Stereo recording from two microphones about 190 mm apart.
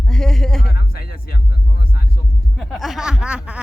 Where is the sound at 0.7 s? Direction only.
55° left (ahead or behind).